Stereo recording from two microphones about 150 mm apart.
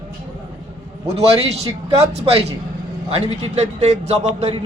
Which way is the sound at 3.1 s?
45° right (ahead or behind).